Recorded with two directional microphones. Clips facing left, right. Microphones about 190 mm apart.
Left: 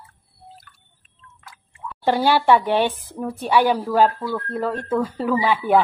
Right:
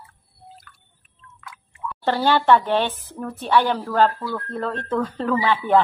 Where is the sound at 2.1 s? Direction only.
10° left (ahead or behind).